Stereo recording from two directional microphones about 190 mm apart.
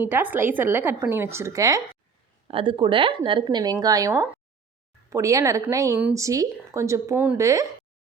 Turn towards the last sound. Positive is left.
turn(degrees=-15)  # may be behind; listen again after turning